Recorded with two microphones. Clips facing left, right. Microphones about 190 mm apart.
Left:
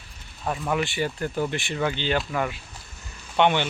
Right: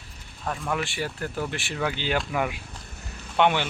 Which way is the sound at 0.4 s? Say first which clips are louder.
Left 3 dB; 5° left (ahead or behind).